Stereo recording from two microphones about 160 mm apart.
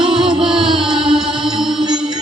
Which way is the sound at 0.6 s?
30° right (ahead or behind).